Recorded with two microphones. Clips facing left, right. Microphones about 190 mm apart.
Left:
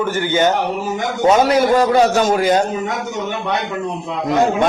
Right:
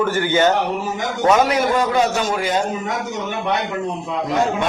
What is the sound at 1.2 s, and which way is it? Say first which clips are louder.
Speech: left 3 dB; 35° left (ahead or behind).